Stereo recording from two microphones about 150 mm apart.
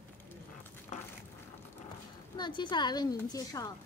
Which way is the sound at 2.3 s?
30° left (ahead or behind).